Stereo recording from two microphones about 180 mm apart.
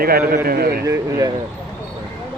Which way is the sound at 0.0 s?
55° right (ahead or behind).